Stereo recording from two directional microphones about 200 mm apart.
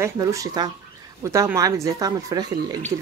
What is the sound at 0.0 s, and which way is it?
Speech, 15° right (ahead or behind).